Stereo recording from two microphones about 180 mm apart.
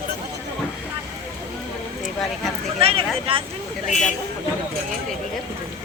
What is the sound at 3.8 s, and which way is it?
Speech, 40° left (ahead or behind).